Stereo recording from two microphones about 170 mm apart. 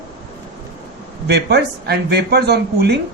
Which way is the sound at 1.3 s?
75° right (ahead or behind).